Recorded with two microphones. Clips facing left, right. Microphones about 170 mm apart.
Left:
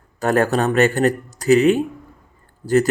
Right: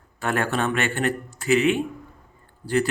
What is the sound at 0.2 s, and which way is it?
Speech, 40° left (ahead or behind).